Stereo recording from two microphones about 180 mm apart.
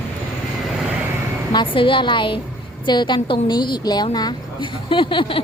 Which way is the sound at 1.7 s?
30° left (ahead or behind).